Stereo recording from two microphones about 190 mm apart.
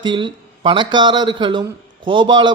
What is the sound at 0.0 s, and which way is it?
A man's voice, 25° right (ahead or behind).